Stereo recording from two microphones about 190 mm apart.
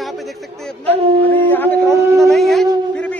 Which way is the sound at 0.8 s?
30° right (ahead or behind).